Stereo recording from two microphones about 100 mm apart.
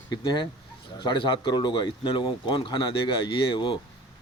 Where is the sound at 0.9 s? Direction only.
50° left (ahead or behind).